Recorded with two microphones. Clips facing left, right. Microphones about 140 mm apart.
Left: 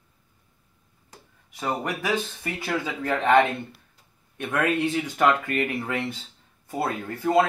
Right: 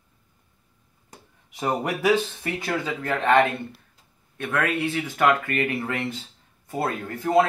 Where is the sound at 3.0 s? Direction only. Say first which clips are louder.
Even; 10° left (ahead or behind).